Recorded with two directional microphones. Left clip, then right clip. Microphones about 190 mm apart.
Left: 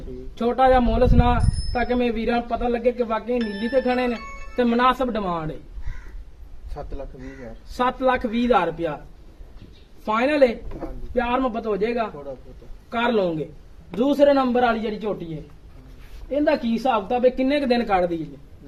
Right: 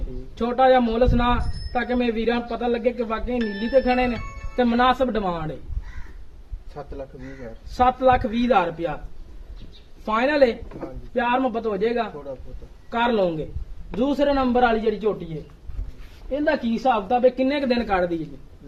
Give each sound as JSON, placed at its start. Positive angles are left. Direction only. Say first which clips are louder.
{"t": 0.3, "sound": "a man's voice", "louder": "even", "side_deg": 15}
{"t": 6.7, "sound": "a man's voice", "louder": "even", "side_deg": 0}
{"t": 7.7, "sound": "a man's voice", "louder": "right 3 dB", "side_deg": 15}
{"t": 10.0, "sound": "a man's voice", "louder": "even", "side_deg": 10}